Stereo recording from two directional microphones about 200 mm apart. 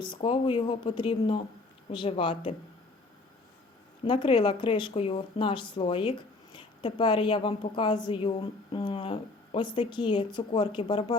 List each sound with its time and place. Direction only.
0.0 s speech: 25° left (ahead or behind)
4.0 s speech: 25° left (ahead or behind)